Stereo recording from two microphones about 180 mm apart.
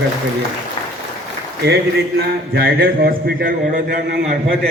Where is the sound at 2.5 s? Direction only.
60° right (ahead or behind).